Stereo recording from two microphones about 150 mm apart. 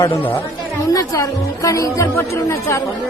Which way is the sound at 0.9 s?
20° left (ahead or behind).